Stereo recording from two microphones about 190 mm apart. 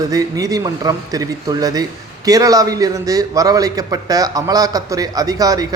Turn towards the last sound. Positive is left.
turn(degrees=-20)  # may be behind; listen again after turning